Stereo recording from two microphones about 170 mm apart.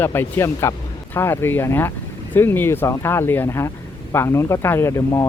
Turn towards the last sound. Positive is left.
turn(degrees=15)  # may be behind; listen again after turning